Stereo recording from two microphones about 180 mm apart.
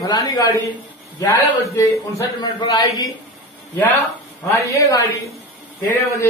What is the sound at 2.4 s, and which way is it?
Speech, 25° left (ahead or behind).